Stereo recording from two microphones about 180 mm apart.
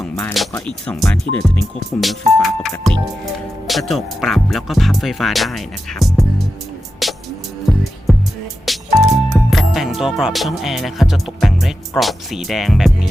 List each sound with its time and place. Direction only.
0.0 s speech: 5° left (ahead or behind)
7.0 s music: centre (ahead or behind)
8.6 s speech: centre (ahead or behind)